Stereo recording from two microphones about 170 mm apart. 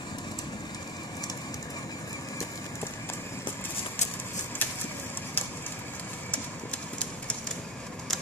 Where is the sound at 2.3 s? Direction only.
15° left (ahead or behind).